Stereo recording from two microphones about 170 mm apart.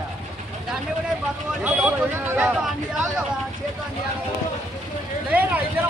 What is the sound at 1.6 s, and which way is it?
Speech, 10° right (ahead or behind).